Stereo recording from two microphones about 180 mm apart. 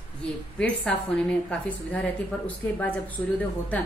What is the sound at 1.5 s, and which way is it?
Speech, 10° left (ahead or behind).